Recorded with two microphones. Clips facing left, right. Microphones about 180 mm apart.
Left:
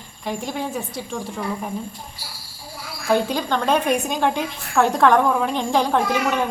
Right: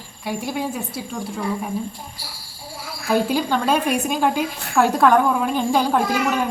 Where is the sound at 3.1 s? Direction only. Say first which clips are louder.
Right 1 dB; 10° right (ahead or behind).